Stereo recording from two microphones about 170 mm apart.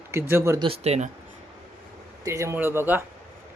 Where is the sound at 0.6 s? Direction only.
35° right (ahead or behind).